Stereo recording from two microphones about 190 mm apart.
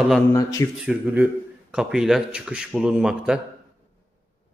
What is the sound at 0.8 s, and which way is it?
A man's voice, 5° right (ahead or behind).